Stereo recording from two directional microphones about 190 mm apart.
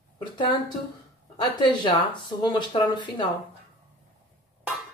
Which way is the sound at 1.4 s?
25° left (ahead or behind).